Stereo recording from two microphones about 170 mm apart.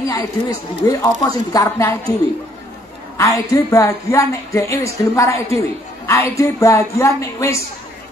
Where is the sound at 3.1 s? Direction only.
20° left (ahead or behind).